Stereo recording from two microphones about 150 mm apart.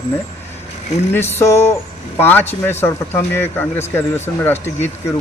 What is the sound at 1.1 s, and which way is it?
Speech, 15° left (ahead or behind).